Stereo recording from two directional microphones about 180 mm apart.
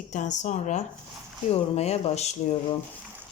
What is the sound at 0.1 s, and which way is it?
Speech, 45° left (ahead or behind).